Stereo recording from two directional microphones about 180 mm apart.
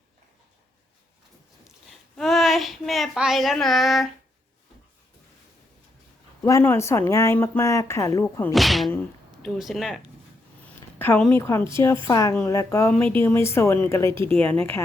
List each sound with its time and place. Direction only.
2.1 s speech: centre (ahead or behind)
6.4 s speech: 15° left (ahead or behind)
8.5 s speech: centre (ahead or behind)
10.9 s speech: 10° left (ahead or behind)